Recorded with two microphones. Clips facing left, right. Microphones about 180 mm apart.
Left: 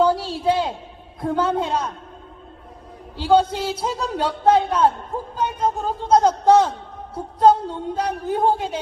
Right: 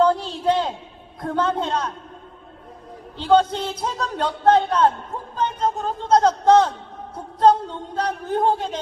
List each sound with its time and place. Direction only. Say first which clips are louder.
0.0 s a sound: even; 10° left (ahead or behind)
1.2 s a man's voice: left 1 dB; 10° left (ahead or behind)
3.2 s a man's voice: even; 5° left (ahead or behind)